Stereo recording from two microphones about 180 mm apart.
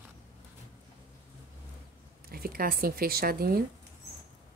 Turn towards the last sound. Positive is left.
turn(degrees=-55)  # may be behind; listen again after turning